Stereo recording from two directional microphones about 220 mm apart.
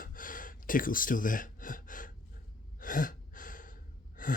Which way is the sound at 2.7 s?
40° left (ahead or behind).